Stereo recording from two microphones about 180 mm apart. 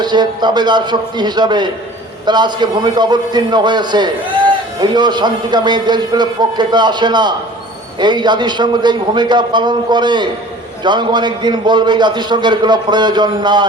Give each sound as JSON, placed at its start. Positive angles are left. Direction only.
{"t": 0.0, "sound": "a man's voice", "side_deg": -25}